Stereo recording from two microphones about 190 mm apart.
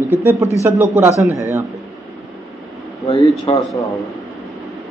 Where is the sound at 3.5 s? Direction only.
25° left (ahead or behind).